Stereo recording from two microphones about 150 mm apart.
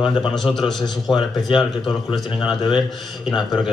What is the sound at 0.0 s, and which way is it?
Speech, 35° left (ahead or behind).